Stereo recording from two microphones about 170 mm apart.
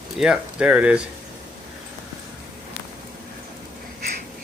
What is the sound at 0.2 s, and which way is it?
Speech, 5° right (ahead or behind).